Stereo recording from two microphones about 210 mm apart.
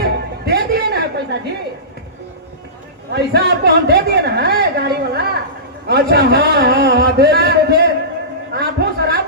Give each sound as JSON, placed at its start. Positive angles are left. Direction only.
{"t": 0.0, "sound": "music", "side_deg": -50}
{"t": 3.1, "sound": "a man's voice", "side_deg": -50}
{"t": 8.5, "sound": "a sound", "side_deg": -50}